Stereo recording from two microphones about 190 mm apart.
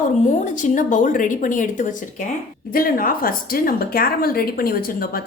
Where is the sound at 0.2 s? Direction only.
40° left (ahead or behind).